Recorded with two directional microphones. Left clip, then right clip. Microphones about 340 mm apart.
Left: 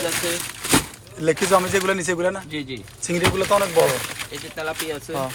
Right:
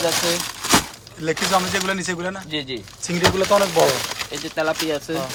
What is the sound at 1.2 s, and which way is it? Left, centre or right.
Speech, centre.